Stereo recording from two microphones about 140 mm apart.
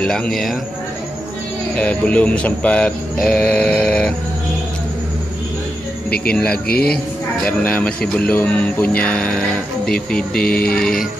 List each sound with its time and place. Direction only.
0.0 s a man's voice: 5° left (ahead or behind)
1.8 s speech: 10° left (ahead or behind)
6.3 s speech: 5° left (ahead or behind)
6.7 s speech: 90° left
7.4 s a man's voice: 10° left (ahead or behind)